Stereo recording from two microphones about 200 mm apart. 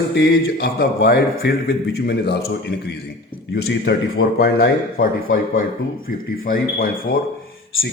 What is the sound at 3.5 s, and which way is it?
Speech, 55° left (ahead or behind).